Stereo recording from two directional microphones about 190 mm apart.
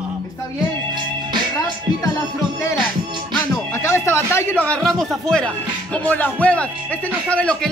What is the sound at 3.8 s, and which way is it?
Speech, 15° left (ahead or behind).